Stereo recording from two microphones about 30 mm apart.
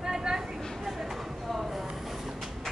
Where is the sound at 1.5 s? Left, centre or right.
Centre.